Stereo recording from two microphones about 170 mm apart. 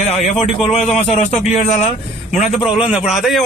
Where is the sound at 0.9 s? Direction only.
40° left (ahead or behind).